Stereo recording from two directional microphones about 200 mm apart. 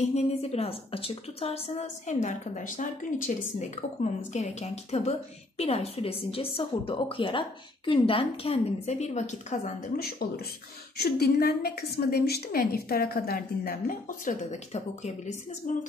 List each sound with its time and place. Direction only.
0.0 s a woman's voice: 30° left (ahead or behind)